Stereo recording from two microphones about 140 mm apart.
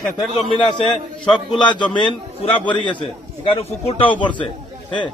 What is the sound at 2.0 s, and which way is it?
A man's voice, 35° left (ahead or behind).